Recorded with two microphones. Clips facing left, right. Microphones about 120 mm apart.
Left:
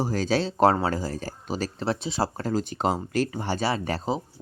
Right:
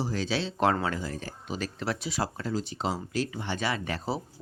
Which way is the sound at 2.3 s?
45° left (ahead or behind).